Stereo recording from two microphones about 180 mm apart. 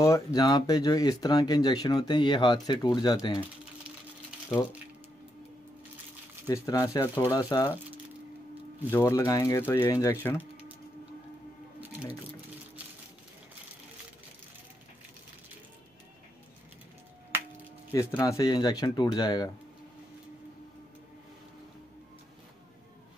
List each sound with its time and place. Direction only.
0.0 s speech: 20° left (ahead or behind)
6.4 s speech: 20° left (ahead or behind)
8.9 s speech: 15° left (ahead or behind)
17.9 s speech: 20° left (ahead or behind)